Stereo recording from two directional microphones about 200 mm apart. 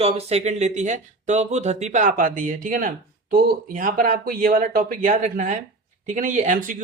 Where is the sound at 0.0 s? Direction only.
30° right (ahead or behind).